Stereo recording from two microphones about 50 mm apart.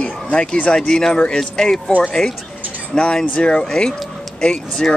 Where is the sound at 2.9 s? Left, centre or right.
Centre.